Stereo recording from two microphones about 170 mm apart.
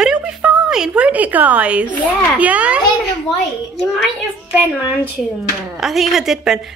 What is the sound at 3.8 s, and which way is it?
A woman's voice, centre (ahead or behind).